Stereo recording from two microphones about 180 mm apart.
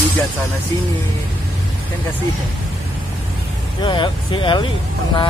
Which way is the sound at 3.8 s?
25° left (ahead or behind).